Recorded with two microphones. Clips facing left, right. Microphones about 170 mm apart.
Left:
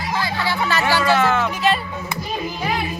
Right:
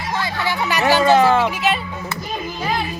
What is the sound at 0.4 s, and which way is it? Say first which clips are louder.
Music: right 4 dB; 15° right (ahead or behind).